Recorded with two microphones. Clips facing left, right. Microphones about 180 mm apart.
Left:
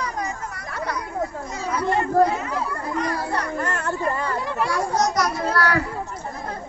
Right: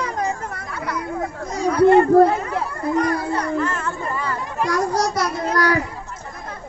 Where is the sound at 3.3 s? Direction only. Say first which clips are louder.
Right 4 dB; 65° left (ahead or behind).